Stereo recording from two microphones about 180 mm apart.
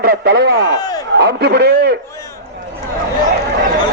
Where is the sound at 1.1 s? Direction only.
65° right (ahead or behind).